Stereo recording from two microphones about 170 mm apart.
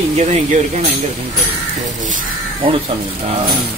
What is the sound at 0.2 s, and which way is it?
Speech, 45° right (ahead or behind).